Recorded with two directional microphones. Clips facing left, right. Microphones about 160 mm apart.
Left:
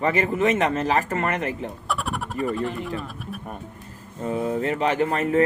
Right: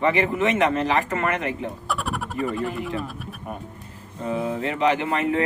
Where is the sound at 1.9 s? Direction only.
Centre (ahead or behind).